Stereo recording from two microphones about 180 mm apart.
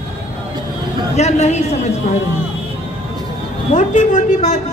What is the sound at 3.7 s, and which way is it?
Speech, 45° left (ahead or behind).